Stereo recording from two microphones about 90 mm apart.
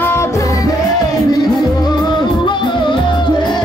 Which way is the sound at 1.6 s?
50° left (ahead or behind).